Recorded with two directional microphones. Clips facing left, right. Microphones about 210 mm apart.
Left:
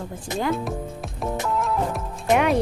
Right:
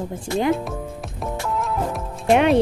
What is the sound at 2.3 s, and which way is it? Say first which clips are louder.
Speech: right 4 dB; 25° right (ahead or behind).